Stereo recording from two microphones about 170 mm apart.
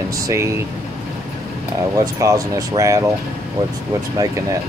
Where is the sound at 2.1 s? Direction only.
20° right (ahead or behind).